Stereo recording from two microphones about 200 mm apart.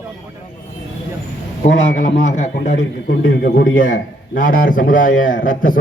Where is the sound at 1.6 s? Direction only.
40° left (ahead or behind).